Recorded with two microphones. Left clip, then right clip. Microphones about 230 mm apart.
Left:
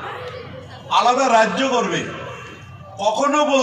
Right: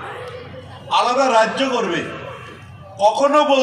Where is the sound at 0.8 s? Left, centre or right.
Right.